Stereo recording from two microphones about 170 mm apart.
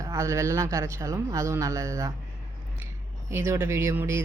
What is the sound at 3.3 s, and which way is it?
Speech, 15° right (ahead or behind).